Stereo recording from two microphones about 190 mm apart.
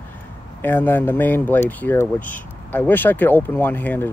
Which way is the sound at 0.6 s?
10° left (ahead or behind).